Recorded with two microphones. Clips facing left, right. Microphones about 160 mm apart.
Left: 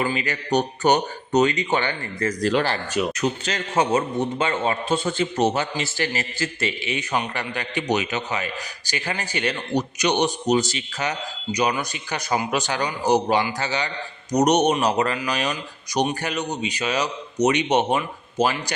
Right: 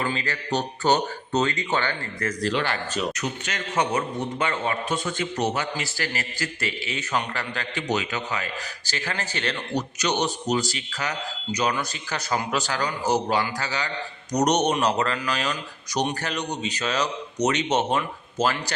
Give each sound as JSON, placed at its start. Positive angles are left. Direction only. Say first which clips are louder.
{"t": 0.0, "sound": "speech", "louder": "left 3 dB", "side_deg": 15}
{"t": 2.4, "sound": "speech", "louder": "left 4 dB", "side_deg": 45}
{"t": 3.2, "sound": "a man's voice", "louder": "left 6 dB", "side_deg": 30}
{"t": 14.3, "sound": "speech", "louder": "left 3 dB", "side_deg": 10}